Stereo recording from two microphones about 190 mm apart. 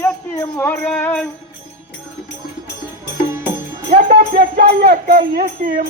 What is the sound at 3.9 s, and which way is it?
Speech, 50° right (ahead or behind).